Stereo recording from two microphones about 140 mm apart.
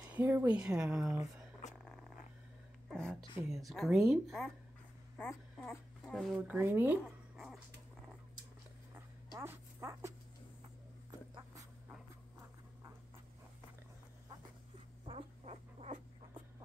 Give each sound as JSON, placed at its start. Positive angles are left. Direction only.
{"t": 0.1, "sound": "speech", "side_deg": -15}
{"t": 2.9, "sound": "speech", "side_deg": 5}
{"t": 5.1, "sound": "a woman's voice", "side_deg": 10}
{"t": 6.0, "sound": "speech", "side_deg": 0}
{"t": 6.3, "sound": "speech", "side_deg": -10}
{"t": 7.3, "sound": "dog", "side_deg": 0}
{"t": 8.9, "sound": "dog", "side_deg": -20}
{"t": 15.0, "sound": "rodents", "side_deg": -45}